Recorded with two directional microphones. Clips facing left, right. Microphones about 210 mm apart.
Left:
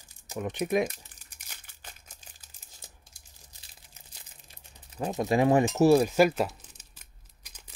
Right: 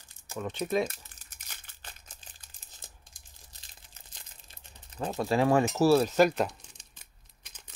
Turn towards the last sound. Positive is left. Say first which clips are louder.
# left 1 dB
turn(degrees=5)  # may be behind; listen again after turning